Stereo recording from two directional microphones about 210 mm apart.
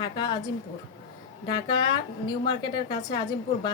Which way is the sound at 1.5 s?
20° left (ahead or behind).